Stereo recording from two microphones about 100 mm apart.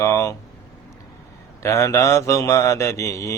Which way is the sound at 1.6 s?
30° left (ahead or behind).